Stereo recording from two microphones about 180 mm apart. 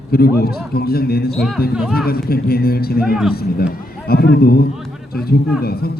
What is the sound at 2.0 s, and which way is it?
A man's voice, 60° left (ahead or behind).